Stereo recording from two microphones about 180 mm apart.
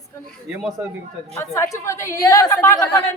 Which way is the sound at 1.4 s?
15° left (ahead or behind).